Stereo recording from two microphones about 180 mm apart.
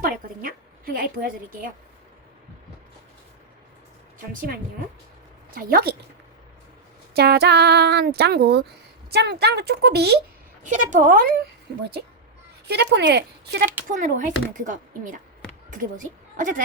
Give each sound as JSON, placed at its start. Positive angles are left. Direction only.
{"t": 0.0, "sound": "a woman's voice", "side_deg": -55}
{"t": 4.4, "sound": "speech", "side_deg": -55}
{"t": 7.2, "sound": "speech", "side_deg": -65}
{"t": 10.6, "sound": "speech", "side_deg": -45}
{"t": 12.6, "sound": "speech", "side_deg": -70}
{"t": 13.9, "sound": "a woman's voice", "side_deg": -45}